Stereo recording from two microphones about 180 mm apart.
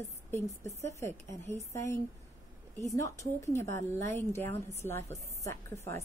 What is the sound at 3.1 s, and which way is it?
A woman's voice, 15° left (ahead or behind).